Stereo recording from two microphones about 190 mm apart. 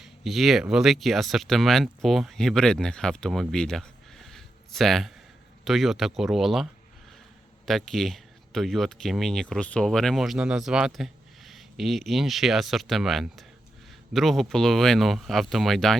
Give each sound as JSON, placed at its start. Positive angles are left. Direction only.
{"t": 0.0, "sound": "speech", "side_deg": 0}